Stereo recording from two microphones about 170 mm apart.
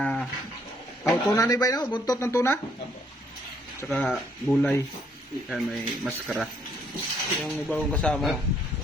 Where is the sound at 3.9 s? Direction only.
Centre (ahead or behind).